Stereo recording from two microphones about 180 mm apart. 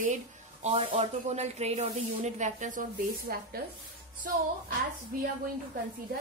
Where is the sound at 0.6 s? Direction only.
30° right (ahead or behind).